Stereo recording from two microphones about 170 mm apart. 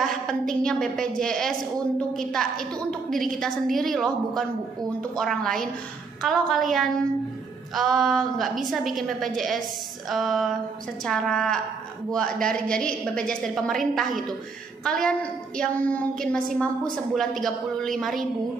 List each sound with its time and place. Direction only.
0.0 s a woman's voice: centre (ahead or behind)